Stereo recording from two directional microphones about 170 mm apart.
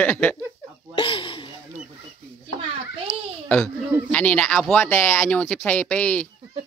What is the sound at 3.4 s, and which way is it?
Speech, 5° left (ahead or behind).